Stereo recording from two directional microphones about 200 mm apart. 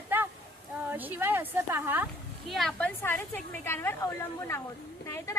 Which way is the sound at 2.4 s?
Centre (ahead or behind).